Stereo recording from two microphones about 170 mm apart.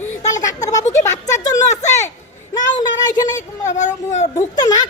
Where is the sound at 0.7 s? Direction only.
20° left (ahead or behind).